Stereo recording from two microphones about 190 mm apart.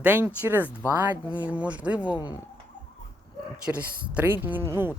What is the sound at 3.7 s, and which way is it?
Speech, 5° right (ahead or behind).